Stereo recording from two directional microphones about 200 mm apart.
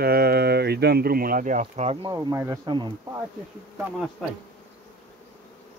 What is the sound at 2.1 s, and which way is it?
Speech, 15° right (ahead or behind).